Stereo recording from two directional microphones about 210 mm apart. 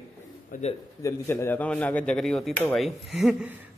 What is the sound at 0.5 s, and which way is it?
Speech, 40° left (ahead or behind).